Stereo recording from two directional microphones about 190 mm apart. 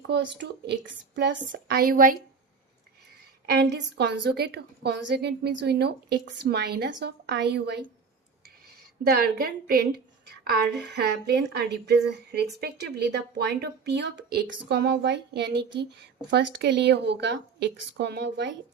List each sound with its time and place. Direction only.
0.1 s a woman's voice: 65° right (ahead or behind); by 2.1 s 45° right (ahead or behind)
3.4 s a woman's voice: 60° right (ahead or behind)
9.0 s a woman's voice: 50° right (ahead or behind)